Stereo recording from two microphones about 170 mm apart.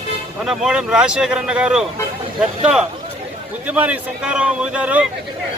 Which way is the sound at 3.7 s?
10° right (ahead or behind).